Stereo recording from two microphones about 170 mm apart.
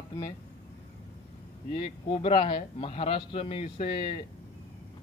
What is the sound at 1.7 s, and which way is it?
A man's voice, 30° left (ahead or behind).